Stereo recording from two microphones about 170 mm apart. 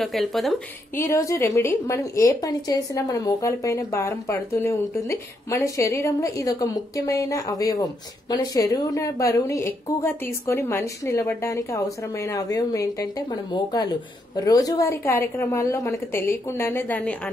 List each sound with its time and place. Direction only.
0.0 s speech: centre (ahead or behind)
0.9 s a woman's voice: 20° left (ahead or behind)